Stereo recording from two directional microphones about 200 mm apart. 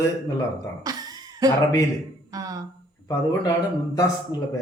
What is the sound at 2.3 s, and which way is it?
Speech, 20° right (ahead or behind).